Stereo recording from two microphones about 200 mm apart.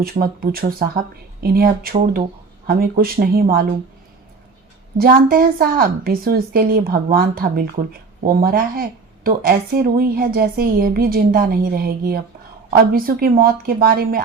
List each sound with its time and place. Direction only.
0.0 s a woman's voice: 50° right (ahead or behind)
4.9 s a woman's voice: 45° right (ahead or behind)